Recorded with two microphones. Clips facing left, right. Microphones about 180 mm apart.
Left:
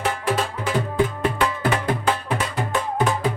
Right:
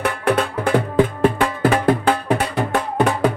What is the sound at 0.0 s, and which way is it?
Music, 60° right (ahead or behind).